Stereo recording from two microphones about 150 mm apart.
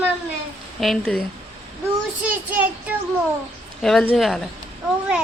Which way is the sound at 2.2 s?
10° right (ahead or behind).